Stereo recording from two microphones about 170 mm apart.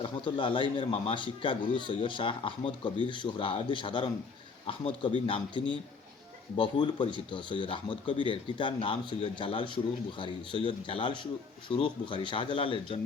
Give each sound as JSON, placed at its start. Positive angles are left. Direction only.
{"t": 0.0, "sound": "speech", "side_deg": 30}
{"t": 6.6, "sound": "speech", "side_deg": 30}